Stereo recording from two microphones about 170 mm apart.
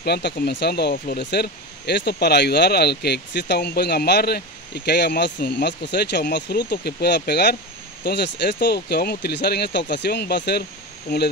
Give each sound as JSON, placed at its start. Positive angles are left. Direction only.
{"t": 0.0, "sound": "speech", "side_deg": 70}
{"t": 6.7, "sound": "speech", "side_deg": 70}